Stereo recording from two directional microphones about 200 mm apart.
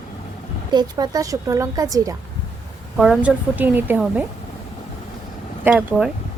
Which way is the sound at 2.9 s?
5° right (ahead or behind).